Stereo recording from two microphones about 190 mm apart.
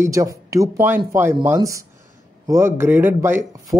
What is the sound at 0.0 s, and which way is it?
Speech, 15° right (ahead or behind).